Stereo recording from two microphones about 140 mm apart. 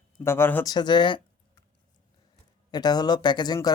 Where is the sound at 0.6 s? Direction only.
30° left (ahead or behind).